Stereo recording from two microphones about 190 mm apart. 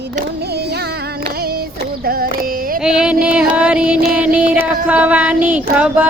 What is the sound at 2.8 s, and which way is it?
Music, 5° right (ahead or behind).